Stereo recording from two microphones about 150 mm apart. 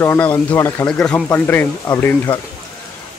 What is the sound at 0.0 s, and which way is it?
Speech, 15° left (ahead or behind).